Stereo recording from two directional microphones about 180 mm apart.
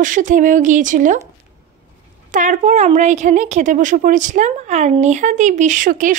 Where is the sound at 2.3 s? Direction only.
45° right (ahead or behind).